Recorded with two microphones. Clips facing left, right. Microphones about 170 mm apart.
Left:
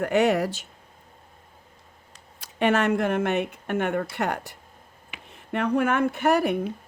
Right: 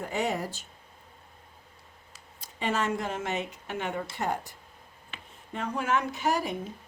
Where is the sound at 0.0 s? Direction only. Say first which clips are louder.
Left 9 dB; 70° left (ahead or behind).